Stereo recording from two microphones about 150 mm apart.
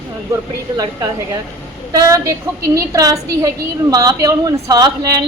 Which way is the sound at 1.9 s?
25° right (ahead or behind).